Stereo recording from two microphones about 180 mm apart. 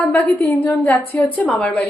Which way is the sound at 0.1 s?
10° left (ahead or behind).